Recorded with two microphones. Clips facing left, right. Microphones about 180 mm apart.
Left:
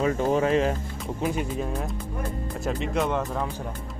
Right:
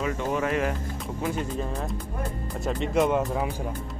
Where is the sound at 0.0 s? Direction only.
35° left (ahead or behind).